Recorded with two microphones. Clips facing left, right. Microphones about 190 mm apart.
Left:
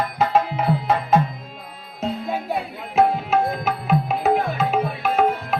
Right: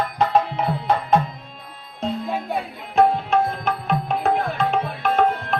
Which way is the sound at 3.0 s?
5° left (ahead or behind).